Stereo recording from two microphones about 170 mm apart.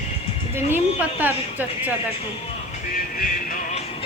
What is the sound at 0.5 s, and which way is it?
A woman's voice, 10° right (ahead or behind).